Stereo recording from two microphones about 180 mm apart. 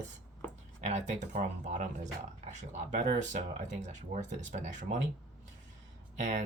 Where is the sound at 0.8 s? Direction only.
40° right (ahead or behind).